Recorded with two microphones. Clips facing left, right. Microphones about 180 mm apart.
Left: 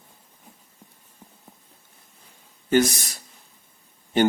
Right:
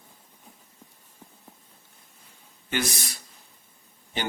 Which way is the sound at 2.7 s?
45° left (ahead or behind).